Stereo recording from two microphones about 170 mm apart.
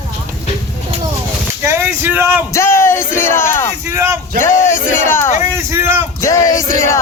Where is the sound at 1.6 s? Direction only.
15° right (ahead or behind).